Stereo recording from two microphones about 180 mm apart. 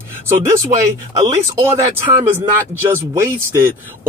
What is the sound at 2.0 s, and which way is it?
A man's voice, 15° right (ahead or behind).